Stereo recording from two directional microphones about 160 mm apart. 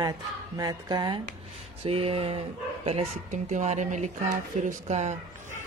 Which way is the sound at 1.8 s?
35° right (ahead or behind).